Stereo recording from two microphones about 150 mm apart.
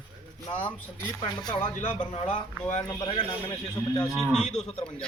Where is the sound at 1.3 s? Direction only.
30° left (ahead or behind).